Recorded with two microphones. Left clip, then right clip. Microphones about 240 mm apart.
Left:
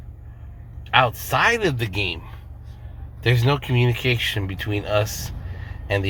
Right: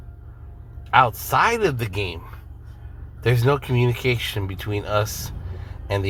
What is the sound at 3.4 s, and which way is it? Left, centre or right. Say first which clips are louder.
Speech: right 1 dB; right.